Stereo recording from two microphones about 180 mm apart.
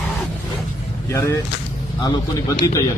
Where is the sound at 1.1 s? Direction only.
15° left (ahead or behind).